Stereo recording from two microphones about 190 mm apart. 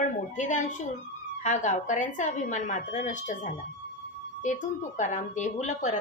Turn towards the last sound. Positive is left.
turn(degrees=40)  # may be behind; listen again after turning